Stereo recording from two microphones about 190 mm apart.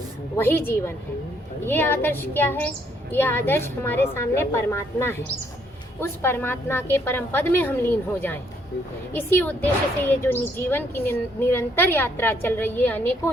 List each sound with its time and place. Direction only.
0.3 s a woman's voice: 10° left (ahead or behind)